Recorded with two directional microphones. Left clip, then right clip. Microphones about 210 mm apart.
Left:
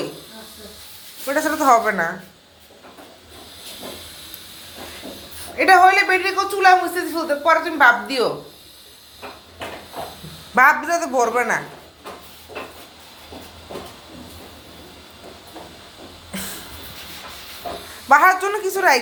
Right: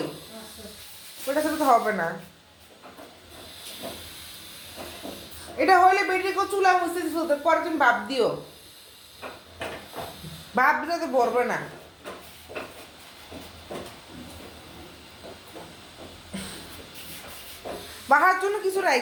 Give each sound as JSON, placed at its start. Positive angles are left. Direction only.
{"t": 1.3, "sound": "speech", "side_deg": 20}
{"t": 5.5, "sound": "speech", "side_deg": 10}
{"t": 10.5, "sound": "speech", "side_deg": 15}
{"t": 18.1, "sound": "speech", "side_deg": 15}